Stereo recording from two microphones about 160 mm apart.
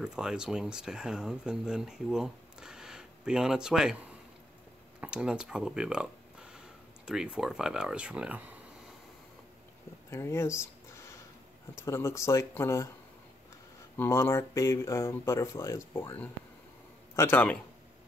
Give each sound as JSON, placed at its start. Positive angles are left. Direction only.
{"t": 0.0, "sound": "speech", "side_deg": -5}
{"t": 5.0, "sound": "speech", "side_deg": -5}
{"t": 10.1, "sound": "speech", "side_deg": 15}
{"t": 11.8, "sound": "speech", "side_deg": 15}
{"t": 13.9, "sound": "a man's voice", "side_deg": 15}